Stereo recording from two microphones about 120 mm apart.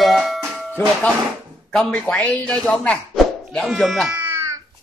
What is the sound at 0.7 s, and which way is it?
Speech, 10° left (ahead or behind).